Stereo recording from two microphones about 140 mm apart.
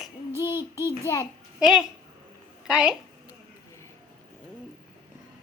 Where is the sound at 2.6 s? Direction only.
5° right (ahead or behind).